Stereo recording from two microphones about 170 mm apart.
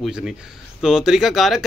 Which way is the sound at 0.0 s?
Centre (ahead or behind).